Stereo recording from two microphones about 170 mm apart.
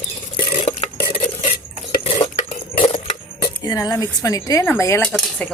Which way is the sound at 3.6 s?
20° left (ahead or behind).